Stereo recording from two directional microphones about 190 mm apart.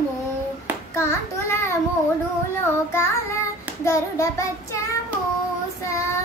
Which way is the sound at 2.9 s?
15° left (ahead or behind).